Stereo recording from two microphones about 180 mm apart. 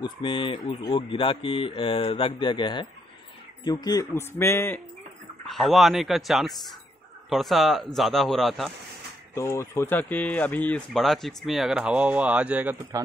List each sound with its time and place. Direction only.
0.0 s speech: 30° left (ahead or behind); by 4.8 s 10° left (ahead or behind)
5.5 s speech: centre (ahead or behind)
9.3 s speech: 15° left (ahead or behind); by 13.0 s 15° right (ahead or behind)